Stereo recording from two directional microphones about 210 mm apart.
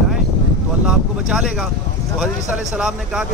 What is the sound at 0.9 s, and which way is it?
Speech, centre (ahead or behind).